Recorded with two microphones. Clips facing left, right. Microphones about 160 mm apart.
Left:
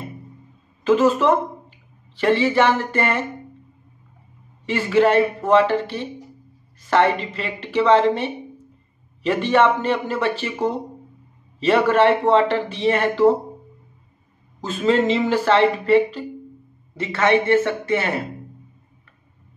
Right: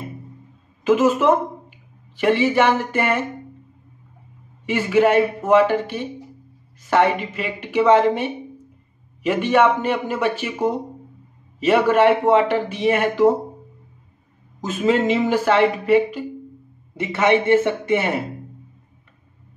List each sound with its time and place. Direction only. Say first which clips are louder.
0.8 s speech: even; 10° right (ahead or behind)
4.6 s speech: even; 10° right (ahead or behind)
11.6 s speech: right 1 dB; 10° right (ahead or behind)
14.6 s speech: even; 10° right (ahead or behind)